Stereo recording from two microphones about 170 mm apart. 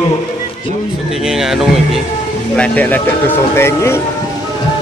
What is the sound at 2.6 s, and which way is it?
Speech, 10° left (ahead or behind).